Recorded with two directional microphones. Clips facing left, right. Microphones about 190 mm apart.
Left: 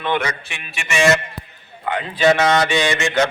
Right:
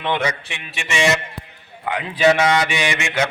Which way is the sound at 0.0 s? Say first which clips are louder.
Even; 20° right (ahead or behind).